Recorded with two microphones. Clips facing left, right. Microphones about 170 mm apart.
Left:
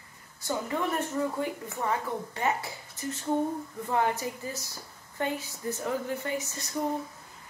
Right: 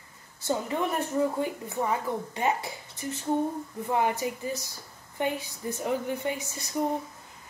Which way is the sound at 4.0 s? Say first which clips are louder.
Right 1 dB; 20° right (ahead or behind).